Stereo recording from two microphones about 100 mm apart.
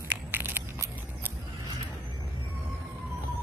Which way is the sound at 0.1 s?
20° right (ahead or behind).